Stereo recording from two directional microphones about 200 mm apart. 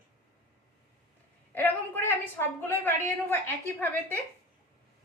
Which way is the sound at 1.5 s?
10° left (ahead or behind).